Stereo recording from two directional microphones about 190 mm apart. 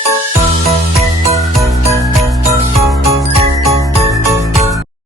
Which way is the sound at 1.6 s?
15° right (ahead or behind).